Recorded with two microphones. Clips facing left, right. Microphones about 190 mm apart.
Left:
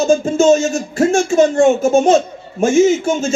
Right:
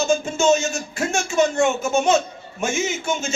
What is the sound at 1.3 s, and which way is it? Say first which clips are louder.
Speech: left 5 dB; 30° left (ahead or behind).